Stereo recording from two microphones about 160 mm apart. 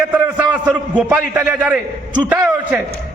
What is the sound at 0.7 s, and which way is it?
A man's voice, 10° right (ahead or behind).